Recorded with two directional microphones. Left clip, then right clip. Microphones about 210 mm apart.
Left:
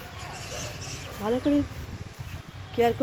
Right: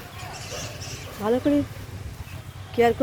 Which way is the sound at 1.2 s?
10° right (ahead or behind).